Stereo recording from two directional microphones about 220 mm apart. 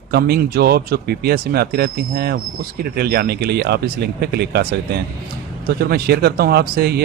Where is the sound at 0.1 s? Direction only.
45° right (ahead or behind).